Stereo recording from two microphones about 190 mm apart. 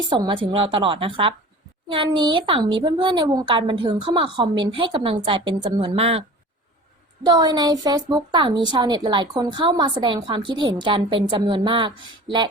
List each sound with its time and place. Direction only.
0.1 s a woman's voice: 25° right (ahead or behind)
7.3 s a woman's voice: 20° right (ahead or behind)